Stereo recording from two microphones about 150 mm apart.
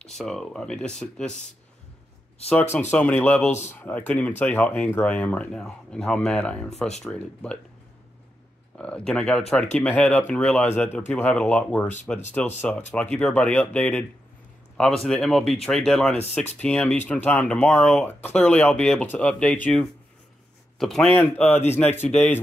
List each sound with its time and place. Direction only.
0.0 s speech: centre (ahead or behind)
2.9 s speech: 10° left (ahead or behind)
8.7 s speech: 5° left (ahead or behind)
15.0 s speech: 5° left (ahead or behind)